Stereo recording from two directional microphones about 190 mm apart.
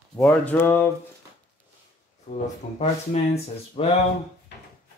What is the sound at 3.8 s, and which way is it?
Speech, 30° left (ahead or behind).